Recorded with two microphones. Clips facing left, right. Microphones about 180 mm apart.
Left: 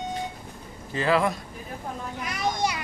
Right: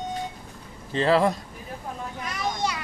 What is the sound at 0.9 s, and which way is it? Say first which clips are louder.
Speech: right 3 dB; 30° right (ahead or behind).